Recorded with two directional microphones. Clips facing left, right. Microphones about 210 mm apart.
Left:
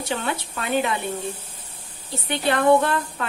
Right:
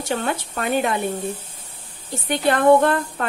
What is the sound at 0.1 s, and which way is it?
Speech, 45° right (ahead or behind).